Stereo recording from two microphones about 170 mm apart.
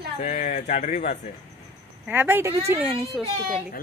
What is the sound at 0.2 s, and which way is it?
Speech, 45° left (ahead or behind).